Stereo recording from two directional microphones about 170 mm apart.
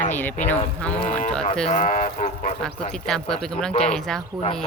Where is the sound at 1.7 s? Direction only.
45° left (ahead or behind).